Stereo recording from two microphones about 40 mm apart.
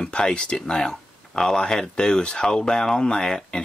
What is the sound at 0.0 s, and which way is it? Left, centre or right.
Speech, left.